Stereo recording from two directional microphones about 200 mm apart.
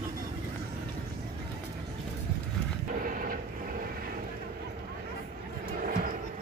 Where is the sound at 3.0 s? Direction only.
45° right (ahead or behind).